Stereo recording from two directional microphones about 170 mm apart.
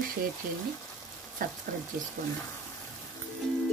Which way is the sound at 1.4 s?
55° right (ahead or behind).